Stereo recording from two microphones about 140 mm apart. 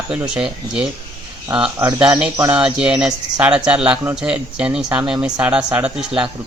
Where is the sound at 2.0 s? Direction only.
5° right (ahead or behind).